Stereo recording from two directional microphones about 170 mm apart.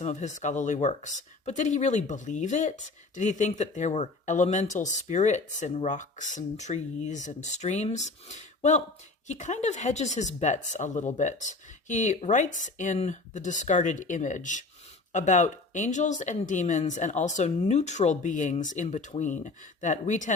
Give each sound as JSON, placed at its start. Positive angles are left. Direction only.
{"t": 0.0, "sound": "speech", "side_deg": 45}